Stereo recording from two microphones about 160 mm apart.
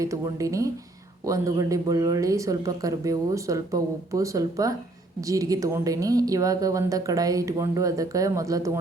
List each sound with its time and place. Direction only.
0.0 s a woman's voice: 20° right (ahead or behind)